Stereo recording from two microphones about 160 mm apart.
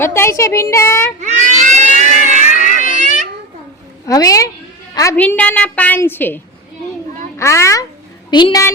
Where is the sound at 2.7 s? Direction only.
50° right (ahead or behind).